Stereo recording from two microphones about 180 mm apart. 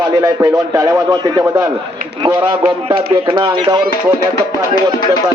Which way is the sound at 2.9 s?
30° right (ahead or behind).